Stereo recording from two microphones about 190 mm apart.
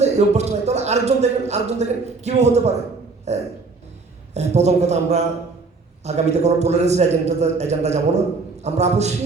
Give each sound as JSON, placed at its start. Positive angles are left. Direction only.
{"t": 0.0, "sound": "a man's voice", "side_deg": -35}